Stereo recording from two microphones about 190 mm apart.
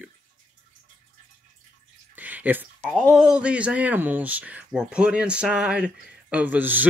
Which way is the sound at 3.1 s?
5° right (ahead or behind).